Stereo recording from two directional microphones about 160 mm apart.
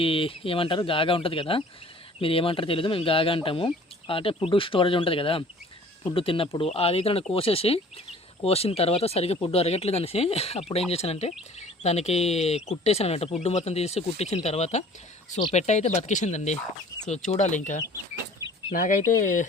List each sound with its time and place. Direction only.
0.0 s speech: 35° left (ahead or behind); by 19.5 s 50° left (ahead or behind)